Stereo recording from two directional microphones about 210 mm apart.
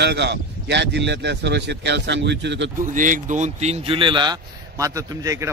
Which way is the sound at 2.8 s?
40° right (ahead or behind).